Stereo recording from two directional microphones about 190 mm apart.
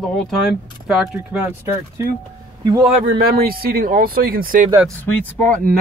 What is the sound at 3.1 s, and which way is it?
Speech, 55° right (ahead or behind).